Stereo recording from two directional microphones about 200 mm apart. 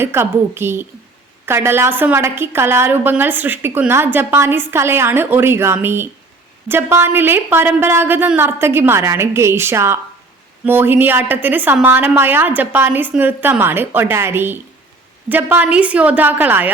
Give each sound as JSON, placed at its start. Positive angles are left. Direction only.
{"t": 0.0, "sound": "a woman's voice", "side_deg": -10}